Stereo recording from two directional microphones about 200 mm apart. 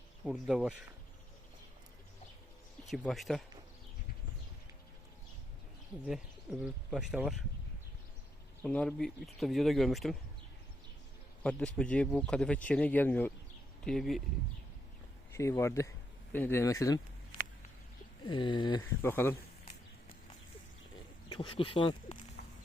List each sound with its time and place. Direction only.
0.3 s speech: centre (ahead or behind)
2.9 s speech: centre (ahead or behind)
6.1 s speech: 5° right (ahead or behind)
8.6 s speech: 5° left (ahead or behind)
11.4 s speech: 5° left (ahead or behind)
15.3 s speech: 15° left (ahead or behind)
18.3 s speech: 25° left (ahead or behind)
18.8 s speech: 10° left (ahead or behind)
21.2 s speech: 25° left (ahead or behind)
22.4 s walk: 55° left (ahead or behind)